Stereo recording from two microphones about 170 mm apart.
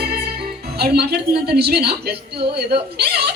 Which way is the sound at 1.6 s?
70° right (ahead or behind).